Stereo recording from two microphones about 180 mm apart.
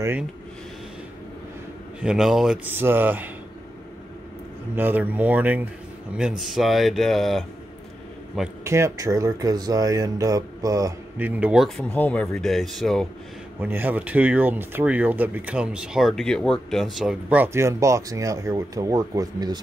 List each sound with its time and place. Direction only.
2.0 s speech: 5° right (ahead or behind)
4.7 s speech: 10° right (ahead or behind)
8.6 s speech: 15° right (ahead or behind); by 13.0 s centre (ahead or behind)
13.6 s speech: 10° right (ahead or behind)